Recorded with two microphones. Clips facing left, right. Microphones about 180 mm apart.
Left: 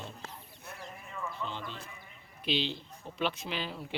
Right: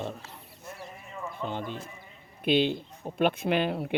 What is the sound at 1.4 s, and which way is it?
Speech, 50° right (ahead or behind).